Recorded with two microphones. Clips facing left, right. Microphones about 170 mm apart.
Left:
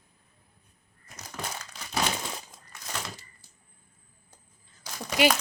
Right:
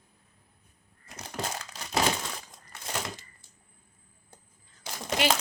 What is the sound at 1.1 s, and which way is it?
Crumpling, 30° right (ahead or behind).